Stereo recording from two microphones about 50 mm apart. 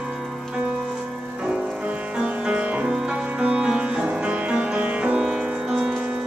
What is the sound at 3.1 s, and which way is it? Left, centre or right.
Music, right.